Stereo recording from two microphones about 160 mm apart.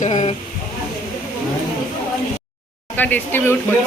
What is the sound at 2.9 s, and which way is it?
Speech, 10° left (ahead or behind).